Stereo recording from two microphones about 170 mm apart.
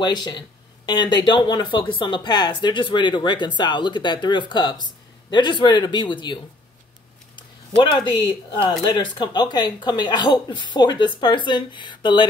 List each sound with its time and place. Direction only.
0.0 s speech: 25° left (ahead or behind)